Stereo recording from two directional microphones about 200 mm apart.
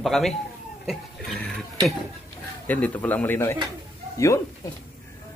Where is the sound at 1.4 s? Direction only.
Centre (ahead or behind).